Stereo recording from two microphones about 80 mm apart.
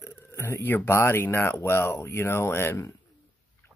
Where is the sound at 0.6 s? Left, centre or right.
Left.